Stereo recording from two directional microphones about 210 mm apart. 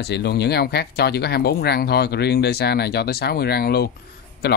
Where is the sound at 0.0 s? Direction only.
55° left (ahead or behind).